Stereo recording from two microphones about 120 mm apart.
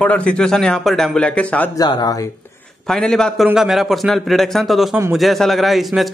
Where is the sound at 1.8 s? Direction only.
35° left (ahead or behind).